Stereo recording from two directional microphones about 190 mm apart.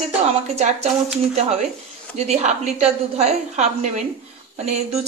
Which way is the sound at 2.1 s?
35° right (ahead or behind).